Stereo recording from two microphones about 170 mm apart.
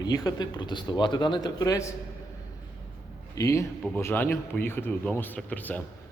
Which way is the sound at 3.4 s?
20° left (ahead or behind).